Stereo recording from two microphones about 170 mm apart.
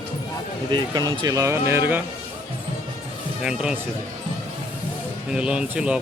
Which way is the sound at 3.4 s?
5° right (ahead or behind).